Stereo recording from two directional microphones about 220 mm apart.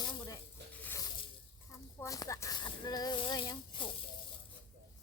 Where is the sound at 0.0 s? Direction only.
20° left (ahead or behind).